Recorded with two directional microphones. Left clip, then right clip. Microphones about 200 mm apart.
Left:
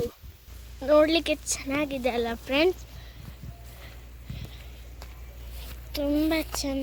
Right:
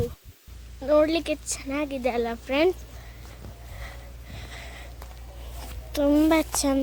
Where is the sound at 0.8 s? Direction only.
Centre (ahead or behind).